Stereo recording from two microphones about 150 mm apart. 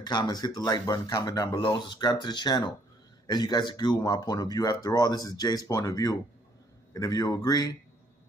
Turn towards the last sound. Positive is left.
turn(degrees=25)  # may be behind; listen again after turning